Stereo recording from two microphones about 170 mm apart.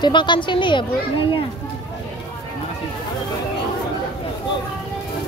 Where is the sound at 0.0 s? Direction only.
25° left (ahead or behind).